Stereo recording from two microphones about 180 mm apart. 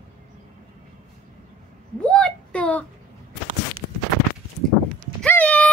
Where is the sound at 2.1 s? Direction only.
5° left (ahead or behind).